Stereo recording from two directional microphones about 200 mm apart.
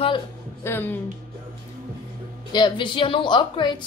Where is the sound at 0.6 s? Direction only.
10° left (ahead or behind).